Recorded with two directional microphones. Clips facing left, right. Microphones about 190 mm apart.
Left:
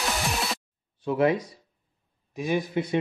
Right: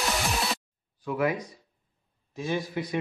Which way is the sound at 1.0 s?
30° left (ahead or behind).